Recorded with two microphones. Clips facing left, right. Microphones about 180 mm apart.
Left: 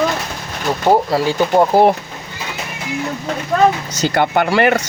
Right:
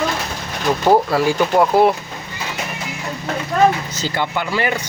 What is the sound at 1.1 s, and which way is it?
Speech, 25° left (ahead or behind).